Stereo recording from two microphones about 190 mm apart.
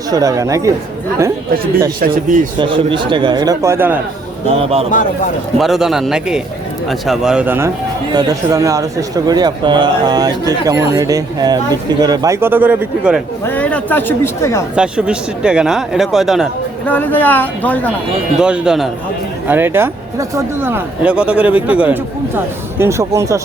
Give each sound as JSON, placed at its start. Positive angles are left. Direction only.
{"t": 0.1, "sound": "speech", "side_deg": -20}
{"t": 2.0, "sound": "speech", "side_deg": -45}
{"t": 2.6, "sound": "speech", "side_deg": -25}
{"t": 4.5, "sound": "a man's voice", "side_deg": -30}
{"t": 5.5, "sound": "speech", "side_deg": 0}
{"t": 13.4, "sound": "speech", "side_deg": 10}
{"t": 14.8, "sound": "speech", "side_deg": -5}
{"t": 16.9, "sound": "speech", "side_deg": 10}
{"t": 18.3, "sound": "speech", "side_deg": -5}